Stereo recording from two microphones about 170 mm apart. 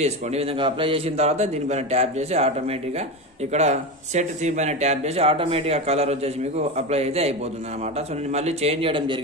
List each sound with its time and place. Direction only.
0.0 s speech: 35° right (ahead or behind)
3.5 s speech: 40° right (ahead or behind)
8.4 s speech: 40° right (ahead or behind)